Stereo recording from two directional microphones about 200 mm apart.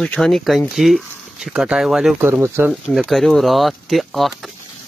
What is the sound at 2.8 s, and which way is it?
Speech, centre (ahead or behind).